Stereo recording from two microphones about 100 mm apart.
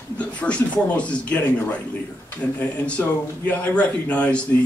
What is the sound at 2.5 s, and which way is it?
Speech, 15° left (ahead or behind).